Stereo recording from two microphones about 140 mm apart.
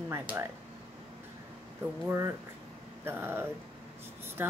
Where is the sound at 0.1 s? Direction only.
15° right (ahead or behind).